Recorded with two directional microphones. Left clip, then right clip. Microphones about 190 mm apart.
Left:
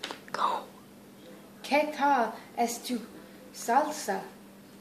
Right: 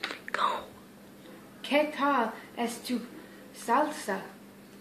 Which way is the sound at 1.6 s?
15° left (ahead or behind).